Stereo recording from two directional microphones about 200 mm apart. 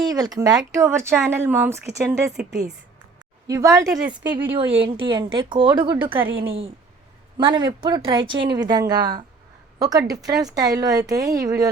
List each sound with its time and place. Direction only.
0.0 s a woman's voice: 20° right (ahead or behind); by 2.7 s 5° right (ahead or behind)
3.4 s speech: 15° right (ahead or behind)